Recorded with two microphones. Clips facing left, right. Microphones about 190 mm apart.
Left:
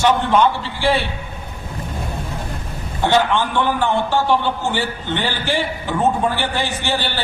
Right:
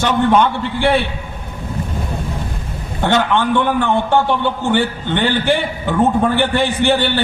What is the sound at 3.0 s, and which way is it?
A man's voice, 60° right (ahead or behind).